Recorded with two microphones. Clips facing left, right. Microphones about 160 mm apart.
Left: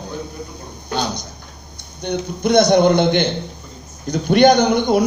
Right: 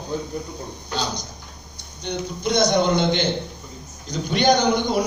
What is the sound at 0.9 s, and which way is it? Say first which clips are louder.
A man's voice: left 5 dB; 60° left (ahead or behind).